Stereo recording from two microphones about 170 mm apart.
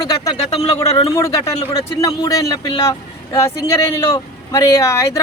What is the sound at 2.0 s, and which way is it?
A man's voice, 20° left (ahead or behind).